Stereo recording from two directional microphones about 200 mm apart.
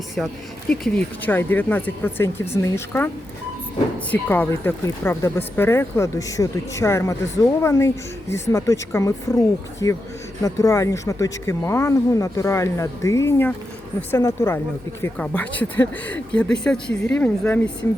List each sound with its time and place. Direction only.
0.2 s speech: 5° left (ahead or behind)
4.1 s speech: 10° left (ahead or behind)